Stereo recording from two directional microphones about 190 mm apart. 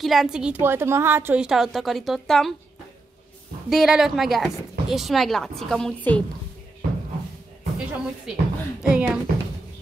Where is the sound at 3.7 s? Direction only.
Centre (ahead or behind).